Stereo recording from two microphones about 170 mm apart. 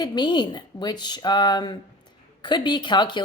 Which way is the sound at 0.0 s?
25° left (ahead or behind).